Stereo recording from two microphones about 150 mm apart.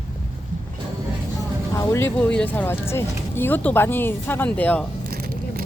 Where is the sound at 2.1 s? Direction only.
5° left (ahead or behind).